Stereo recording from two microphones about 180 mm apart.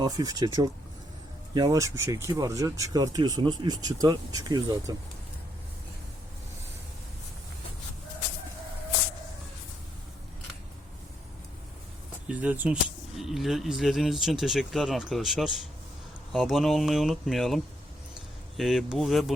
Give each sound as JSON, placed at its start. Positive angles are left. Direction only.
{"t": 0.0, "sound": "speech", "side_deg": -20}
{"t": 12.3, "sound": "speech", "side_deg": -10}